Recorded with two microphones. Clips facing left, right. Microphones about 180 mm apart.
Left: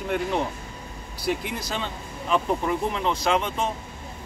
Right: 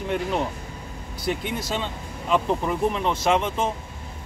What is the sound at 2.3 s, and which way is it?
Speech, centre (ahead or behind).